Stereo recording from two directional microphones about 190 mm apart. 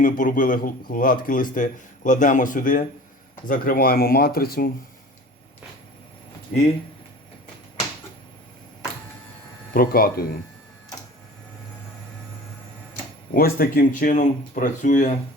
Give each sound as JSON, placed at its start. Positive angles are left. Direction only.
{"t": 0.0, "sound": "speech", "side_deg": 45}
{"t": 6.5, "sound": "speech", "side_deg": 45}
{"t": 9.7, "sound": "speech", "side_deg": 50}
{"t": 13.3, "sound": "speech", "side_deg": 50}